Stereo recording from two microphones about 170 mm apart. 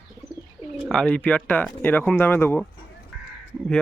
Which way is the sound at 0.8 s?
5° left (ahead or behind).